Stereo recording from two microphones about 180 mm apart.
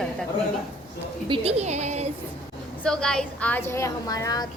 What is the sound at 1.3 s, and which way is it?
Speech, 35° right (ahead or behind).